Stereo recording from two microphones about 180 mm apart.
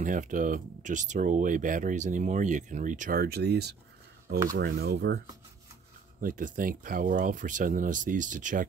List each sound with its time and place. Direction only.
0.0 s speech: 45° right (ahead or behind); by 5.2 s 65° right (ahead or behind)
6.2 s speech: 50° right (ahead or behind)